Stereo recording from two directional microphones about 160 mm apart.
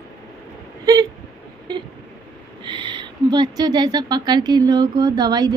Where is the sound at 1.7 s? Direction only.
25° right (ahead or behind).